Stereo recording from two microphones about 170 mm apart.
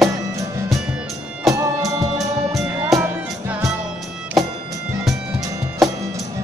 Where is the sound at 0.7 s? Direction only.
5° right (ahead or behind).